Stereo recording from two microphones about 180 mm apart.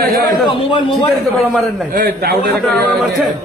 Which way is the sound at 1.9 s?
55° right (ahead or behind).